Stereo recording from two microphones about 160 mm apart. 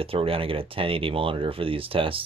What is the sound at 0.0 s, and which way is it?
Speech, 35° right (ahead or behind).